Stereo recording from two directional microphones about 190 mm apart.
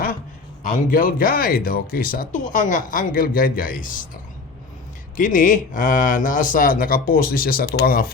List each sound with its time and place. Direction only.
0.7 s speech: 45° left (ahead or behind)
5.1 s speech: 45° left (ahead or behind)